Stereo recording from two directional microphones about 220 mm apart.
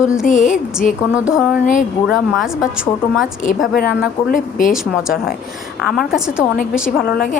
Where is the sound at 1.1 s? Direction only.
5° right (ahead or behind).